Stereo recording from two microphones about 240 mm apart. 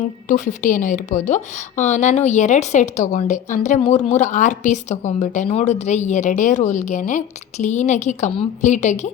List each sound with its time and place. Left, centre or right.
0.3 s a woman's voice: left